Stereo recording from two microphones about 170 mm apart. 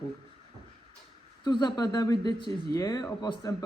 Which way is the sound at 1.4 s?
25° left (ahead or behind).